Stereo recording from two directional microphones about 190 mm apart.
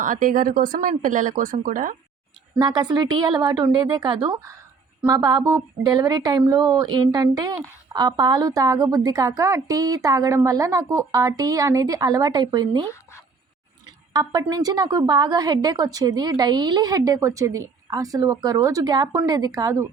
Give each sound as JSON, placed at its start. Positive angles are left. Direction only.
{"t": 0.0, "sound": "speech", "side_deg": -45}
{"t": 2.6, "sound": "a woman's voice", "side_deg": -20}
{"t": 14.1, "sound": "a woman's voice", "side_deg": -15}